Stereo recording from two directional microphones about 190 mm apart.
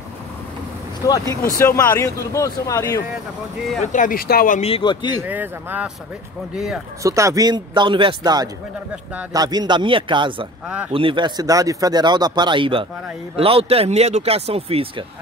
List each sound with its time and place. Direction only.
1.0 s speech: 15° left (ahead or behind)
3.8 s speech: 40° left (ahead or behind)
4.6 s speech: 30° left (ahead or behind)
5.2 s speech: 10° right (ahead or behind)
7.0 s speech: 15° right (ahead or behind)